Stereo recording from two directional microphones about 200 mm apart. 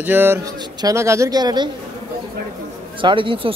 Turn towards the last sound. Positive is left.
turn(degrees=-25)  # may be behind; listen again after turning